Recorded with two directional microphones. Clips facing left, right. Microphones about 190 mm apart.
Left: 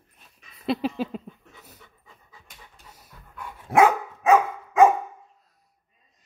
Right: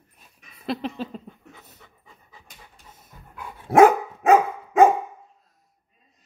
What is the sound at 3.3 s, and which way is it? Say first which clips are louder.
Dog: right 4 dB; 40° right (ahead or behind).